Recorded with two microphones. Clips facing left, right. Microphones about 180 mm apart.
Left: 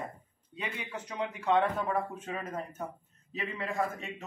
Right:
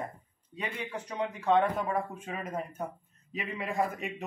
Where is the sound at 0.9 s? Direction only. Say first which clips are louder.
Right 1 dB; 10° right (ahead or behind).